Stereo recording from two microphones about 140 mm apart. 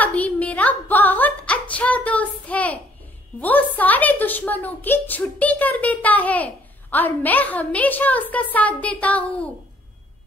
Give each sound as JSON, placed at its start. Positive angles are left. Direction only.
{"t": 0.0, "sound": "a woman's voice", "side_deg": 10}